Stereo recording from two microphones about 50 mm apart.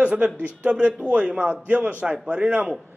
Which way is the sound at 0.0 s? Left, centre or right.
Right.